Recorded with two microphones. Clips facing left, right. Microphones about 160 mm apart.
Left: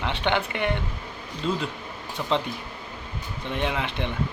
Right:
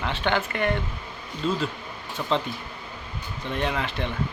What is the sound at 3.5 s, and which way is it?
Speech, 15° left (ahead or behind).